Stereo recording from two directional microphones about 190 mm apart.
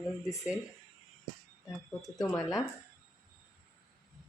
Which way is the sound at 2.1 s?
20° left (ahead or behind).